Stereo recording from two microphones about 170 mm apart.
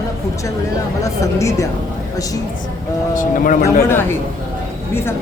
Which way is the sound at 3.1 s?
50° left (ahead or behind).